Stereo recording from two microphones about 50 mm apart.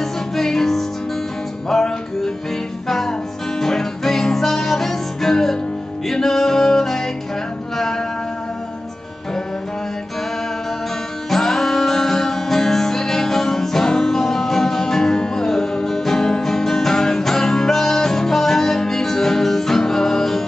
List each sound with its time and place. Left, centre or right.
0.0 s music: centre
11.2 s music: centre